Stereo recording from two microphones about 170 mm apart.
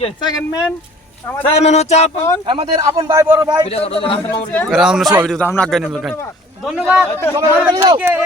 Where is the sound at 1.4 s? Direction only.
40° left (ahead or behind).